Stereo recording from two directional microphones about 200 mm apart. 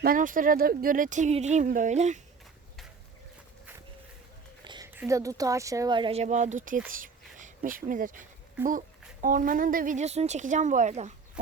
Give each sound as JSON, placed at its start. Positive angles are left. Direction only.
{"t": 0.0, "sound": "speech", "side_deg": -45}
{"t": 4.6, "sound": "a sound", "side_deg": -20}
{"t": 4.9, "sound": "speech", "side_deg": -15}
{"t": 8.6, "sound": "speech", "side_deg": -10}
{"t": 9.2, "sound": "speech", "side_deg": -45}